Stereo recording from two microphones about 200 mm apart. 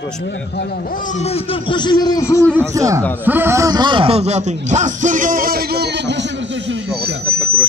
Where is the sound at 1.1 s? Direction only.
30° left (ahead or behind); by 2.5 s 15° left (ahead or behind).